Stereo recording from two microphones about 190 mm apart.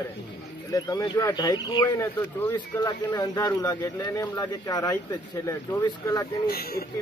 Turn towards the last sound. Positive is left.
turn(degrees=55)  # may be behind; listen again after turning